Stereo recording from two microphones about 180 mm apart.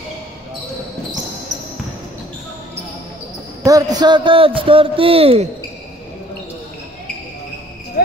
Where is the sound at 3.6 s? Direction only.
20° right (ahead or behind).